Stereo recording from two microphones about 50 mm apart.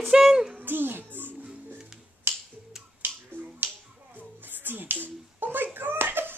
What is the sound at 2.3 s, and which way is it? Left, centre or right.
Finger snapping, right.